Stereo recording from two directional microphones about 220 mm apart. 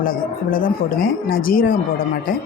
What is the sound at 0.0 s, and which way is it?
Speech, 40° left (ahead or behind).